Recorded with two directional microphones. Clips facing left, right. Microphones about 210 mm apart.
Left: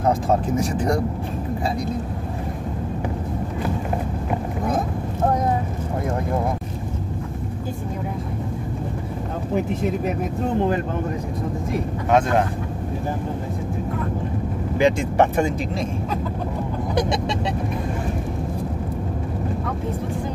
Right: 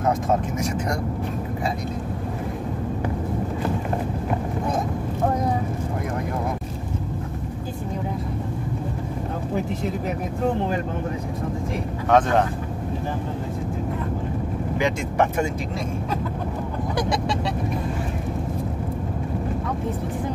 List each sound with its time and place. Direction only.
0.6 s speech: 35° left (ahead or behind)
12.1 s speech: 10° left (ahead or behind)
14.8 s speech: 30° left (ahead or behind)